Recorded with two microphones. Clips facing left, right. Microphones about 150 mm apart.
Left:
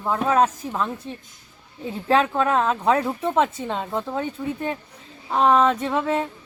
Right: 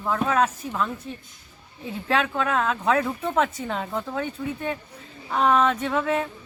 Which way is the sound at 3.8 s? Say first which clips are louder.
Left 2 dB; 5° left (ahead or behind).